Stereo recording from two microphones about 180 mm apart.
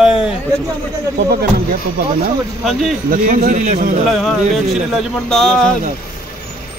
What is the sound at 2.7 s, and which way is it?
Speech, centre (ahead or behind).